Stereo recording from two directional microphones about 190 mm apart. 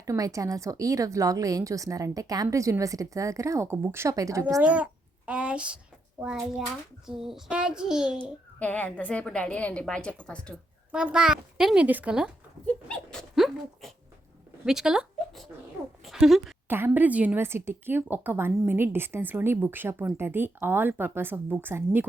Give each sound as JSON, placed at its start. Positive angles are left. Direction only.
{"t": 0.0, "sound": "a woman's voice", "side_deg": -15}
{"t": 4.6, "sound": "a woman's voice", "side_deg": -5}
{"t": 8.5, "sound": "a woman's voice", "side_deg": 10}
{"t": 12.6, "sound": "dog", "side_deg": 5}
{"t": 14.6, "sound": "a woman's voice", "side_deg": -5}